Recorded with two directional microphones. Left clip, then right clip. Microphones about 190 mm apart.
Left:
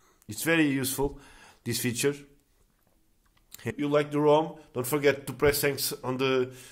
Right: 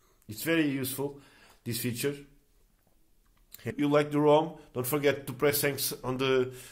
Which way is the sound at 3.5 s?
25° left (ahead or behind).